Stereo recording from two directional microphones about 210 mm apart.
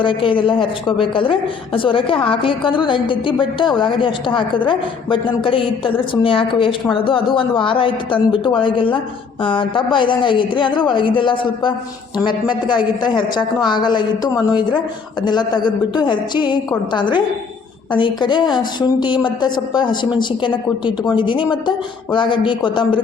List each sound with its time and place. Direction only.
0.0 s a woman's voice: 25° left (ahead or behind)